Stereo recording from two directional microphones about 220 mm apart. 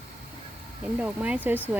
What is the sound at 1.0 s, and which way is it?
Speech, 5° right (ahead or behind).